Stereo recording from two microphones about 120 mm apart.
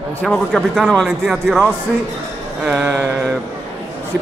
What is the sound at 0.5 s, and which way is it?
Speech, centre (ahead or behind).